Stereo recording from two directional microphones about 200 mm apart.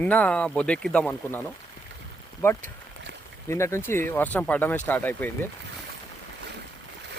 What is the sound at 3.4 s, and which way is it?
Speech, 15° left (ahead or behind).